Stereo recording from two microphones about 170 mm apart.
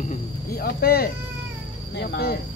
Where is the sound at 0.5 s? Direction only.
60° left (ahead or behind).